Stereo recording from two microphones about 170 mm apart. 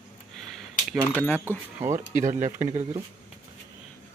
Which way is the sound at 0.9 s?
10° left (ahead or behind).